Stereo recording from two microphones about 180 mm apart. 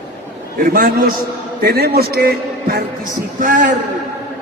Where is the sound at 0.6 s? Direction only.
50° right (ahead or behind).